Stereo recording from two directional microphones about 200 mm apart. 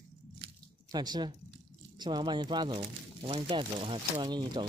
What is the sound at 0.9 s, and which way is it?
Speech, 20° right (ahead or behind).